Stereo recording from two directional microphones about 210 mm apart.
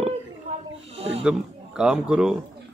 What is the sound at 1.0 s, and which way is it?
Roaring cats, 30° right (ahead or behind).